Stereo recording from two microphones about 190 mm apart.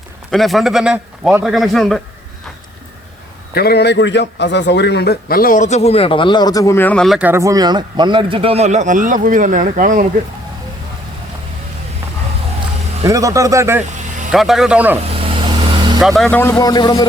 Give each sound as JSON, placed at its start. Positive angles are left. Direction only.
{"t": 0.3, "sound": "a man's voice", "side_deg": 0}
{"t": 3.5, "sound": "a man's voice", "side_deg": 55}
{"t": 13.1, "sound": "speech", "side_deg": -15}
{"t": 14.3, "sound": "a man's voice", "side_deg": 0}
{"t": 15.2, "sound": "vehicle", "side_deg": -25}
{"t": 16.0, "sound": "a man's voice", "side_deg": 0}